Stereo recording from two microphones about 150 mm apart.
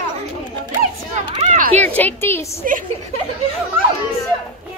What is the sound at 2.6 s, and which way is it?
Speech, 65° right (ahead or behind).